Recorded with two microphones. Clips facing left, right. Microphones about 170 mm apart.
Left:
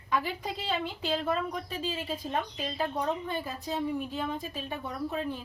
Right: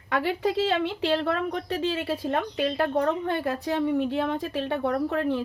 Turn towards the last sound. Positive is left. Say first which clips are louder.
# right 8 dB
turn(degrees=-70)  # may be behind; listen again after turning